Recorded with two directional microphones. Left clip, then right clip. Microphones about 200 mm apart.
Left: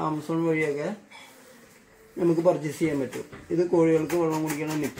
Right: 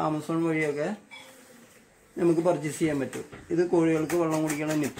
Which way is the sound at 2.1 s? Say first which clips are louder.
Left 2 dB; 15° right (ahead or behind).